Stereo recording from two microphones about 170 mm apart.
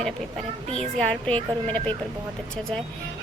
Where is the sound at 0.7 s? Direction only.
5° left (ahead or behind).